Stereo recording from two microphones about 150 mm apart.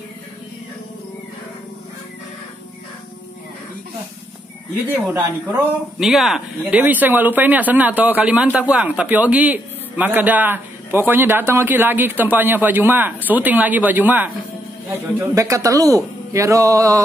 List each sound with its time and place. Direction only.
4.9 s a man's voice: 10° right (ahead or behind)
5.9 s a man's voice: centre (ahead or behind); by 17.0 s 20° right (ahead or behind)